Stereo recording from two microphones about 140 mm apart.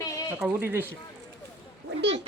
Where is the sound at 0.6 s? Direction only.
15° right (ahead or behind).